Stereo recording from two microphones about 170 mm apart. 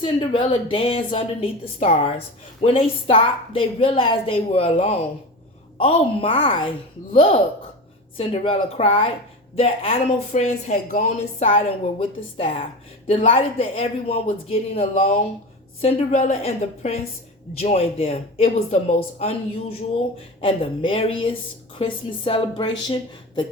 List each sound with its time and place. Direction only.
0.0 s speech: 30° left (ahead or behind)